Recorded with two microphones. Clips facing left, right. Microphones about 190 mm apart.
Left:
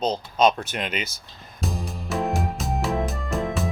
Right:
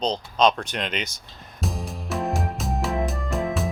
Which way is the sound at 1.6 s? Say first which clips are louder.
Even; centre (ahead or behind).